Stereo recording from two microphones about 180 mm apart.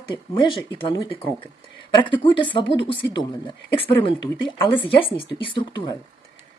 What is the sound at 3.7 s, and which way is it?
Speech, 30° left (ahead or behind).